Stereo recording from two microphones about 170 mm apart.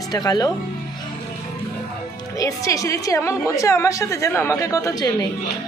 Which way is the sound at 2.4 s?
20° left (ahead or behind).